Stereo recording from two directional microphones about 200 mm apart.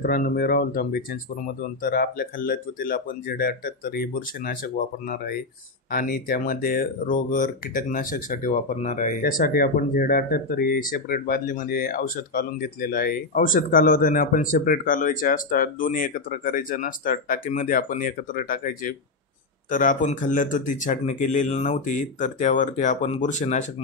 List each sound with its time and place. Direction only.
0.0 s speech: 45° left (ahead or behind)
5.9 s speech: 45° left (ahead or behind)